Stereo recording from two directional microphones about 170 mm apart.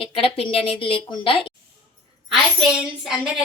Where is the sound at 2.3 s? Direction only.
Centre (ahead or behind).